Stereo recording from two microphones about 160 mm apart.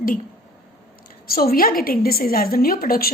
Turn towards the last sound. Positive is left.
turn(degrees=65)  # may be behind; listen again after turning